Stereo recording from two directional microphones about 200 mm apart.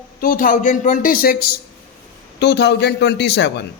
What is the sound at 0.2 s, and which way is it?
A man's voice, 45° left (ahead or behind).